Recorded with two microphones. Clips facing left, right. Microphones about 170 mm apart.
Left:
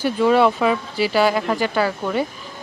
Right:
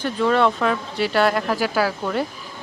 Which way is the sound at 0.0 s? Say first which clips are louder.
Left 3 dB; 5° left (ahead or behind).